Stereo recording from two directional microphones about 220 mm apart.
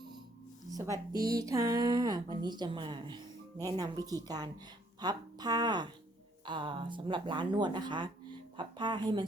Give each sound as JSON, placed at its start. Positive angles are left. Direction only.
{"t": 0.7, "sound": "a woman's voice", "side_deg": -15}